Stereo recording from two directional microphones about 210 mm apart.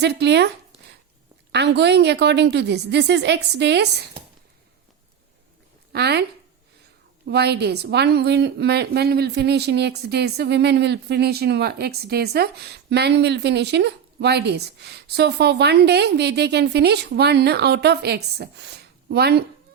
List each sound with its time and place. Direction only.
0.0 s speech: 55° right (ahead or behind)
1.5 s a woman's voice: 55° right (ahead or behind)
5.9 s a woman's voice: 50° right (ahead or behind)
7.3 s a woman's voice: 50° right (ahead or behind)